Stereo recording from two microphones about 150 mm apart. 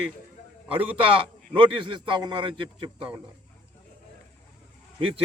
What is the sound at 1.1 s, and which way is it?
Speech, 35° right (ahead or behind).